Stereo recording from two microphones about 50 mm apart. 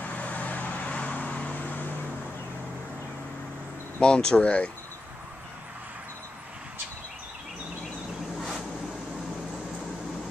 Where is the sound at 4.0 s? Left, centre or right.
Centre.